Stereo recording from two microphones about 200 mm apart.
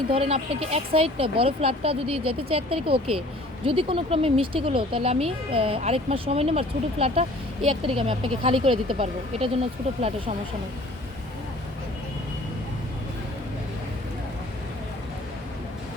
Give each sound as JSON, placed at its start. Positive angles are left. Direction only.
{"t": 0.1, "sound": "speech", "side_deg": -30}